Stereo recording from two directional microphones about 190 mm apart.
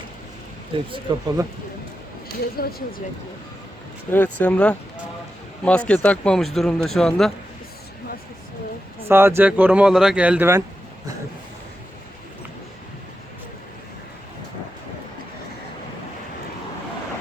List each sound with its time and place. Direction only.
0.9 s speech: 25° right (ahead or behind)
2.6 s speech: 50° left (ahead or behind)
4.1 s speech: 10° left (ahead or behind)
9.0 s speech: 10° right (ahead or behind)